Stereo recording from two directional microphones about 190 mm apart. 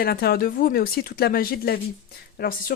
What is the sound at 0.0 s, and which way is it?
Speech, 55° left (ahead or behind).